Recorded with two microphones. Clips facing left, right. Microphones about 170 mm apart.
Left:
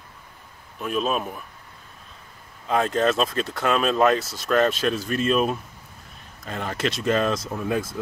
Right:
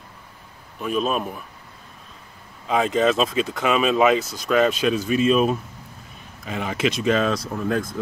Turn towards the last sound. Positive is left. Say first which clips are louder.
# right 2 dB
turn(degrees=5)  # may be behind; listen again after turning